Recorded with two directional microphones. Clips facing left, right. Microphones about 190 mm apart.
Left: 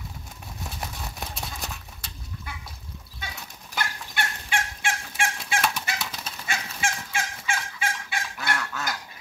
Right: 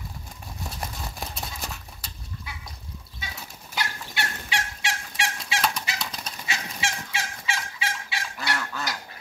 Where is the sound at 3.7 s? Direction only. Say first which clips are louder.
Left 1 dB; 50° left (ahead or behind).